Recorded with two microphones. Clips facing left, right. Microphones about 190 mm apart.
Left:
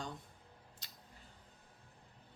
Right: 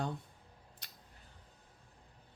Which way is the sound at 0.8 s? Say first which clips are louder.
Right 1 dB; 60° right (ahead or behind).